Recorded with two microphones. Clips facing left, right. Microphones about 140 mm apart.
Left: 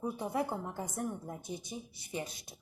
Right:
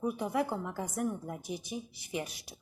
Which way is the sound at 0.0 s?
25° left (ahead or behind).